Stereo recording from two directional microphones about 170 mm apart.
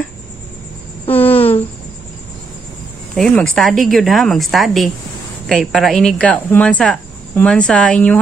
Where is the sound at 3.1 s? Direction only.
5° left (ahead or behind).